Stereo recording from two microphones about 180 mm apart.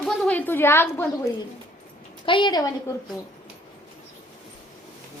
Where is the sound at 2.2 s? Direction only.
25° left (ahead or behind).